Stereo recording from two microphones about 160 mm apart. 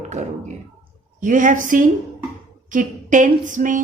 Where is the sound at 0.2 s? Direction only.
45° right (ahead or behind).